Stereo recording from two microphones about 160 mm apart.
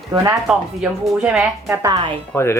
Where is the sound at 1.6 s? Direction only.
20° right (ahead or behind).